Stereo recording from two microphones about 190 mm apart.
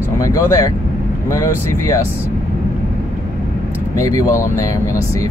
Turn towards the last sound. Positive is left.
turn(degrees=15)  # may be behind; listen again after turning